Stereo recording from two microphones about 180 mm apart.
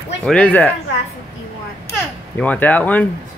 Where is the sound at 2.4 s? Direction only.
10° left (ahead or behind).